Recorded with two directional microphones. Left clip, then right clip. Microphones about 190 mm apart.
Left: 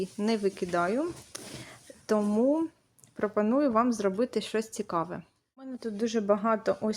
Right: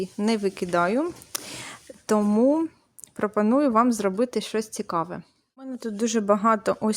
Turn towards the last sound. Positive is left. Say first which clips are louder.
# right 5 dB
turn(degrees=-35)  # may be behind; listen again after turning